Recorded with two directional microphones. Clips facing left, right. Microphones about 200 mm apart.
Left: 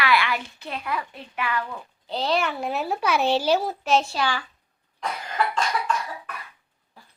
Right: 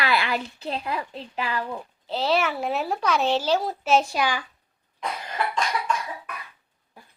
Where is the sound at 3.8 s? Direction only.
10° right (ahead or behind).